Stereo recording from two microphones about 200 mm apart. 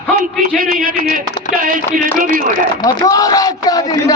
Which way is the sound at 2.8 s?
15° left (ahead or behind).